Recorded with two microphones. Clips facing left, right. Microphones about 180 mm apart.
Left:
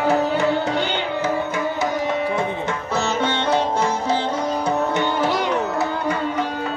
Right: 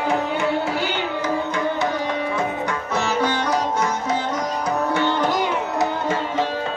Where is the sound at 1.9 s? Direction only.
25° left (ahead or behind).